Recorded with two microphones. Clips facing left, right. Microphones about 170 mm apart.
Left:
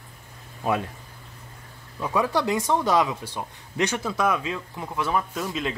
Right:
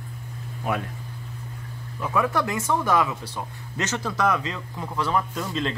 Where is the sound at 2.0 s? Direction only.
20° left (ahead or behind).